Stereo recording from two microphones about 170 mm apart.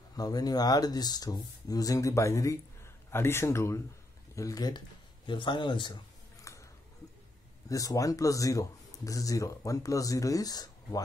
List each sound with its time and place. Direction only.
0.1 s speech: 20° left (ahead or behind)
4.4 s a sound: 20° left (ahead or behind)
7.7 s speech: 20° left (ahead or behind)